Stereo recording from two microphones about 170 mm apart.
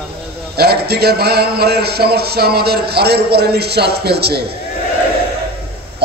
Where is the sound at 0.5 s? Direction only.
70° right (ahead or behind).